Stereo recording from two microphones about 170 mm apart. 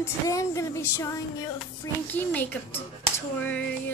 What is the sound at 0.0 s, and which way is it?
Speech, 20° left (ahead or behind).